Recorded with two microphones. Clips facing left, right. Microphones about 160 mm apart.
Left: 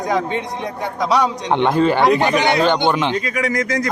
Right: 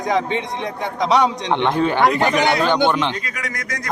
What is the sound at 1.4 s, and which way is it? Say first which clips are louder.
Speech: left 3 dB; 10° left (ahead or behind).